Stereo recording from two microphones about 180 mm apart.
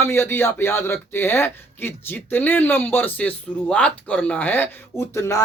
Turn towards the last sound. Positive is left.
turn(degrees=15)  # may be behind; listen again after turning